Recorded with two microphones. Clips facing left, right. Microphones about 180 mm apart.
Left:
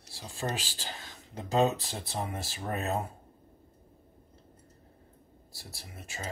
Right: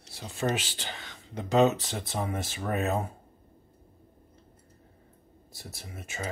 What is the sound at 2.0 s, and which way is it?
Speech, 20° right (ahead or behind).